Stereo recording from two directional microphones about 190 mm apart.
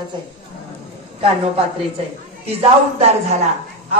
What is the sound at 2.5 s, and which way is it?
Speech, 30° right (ahead or behind).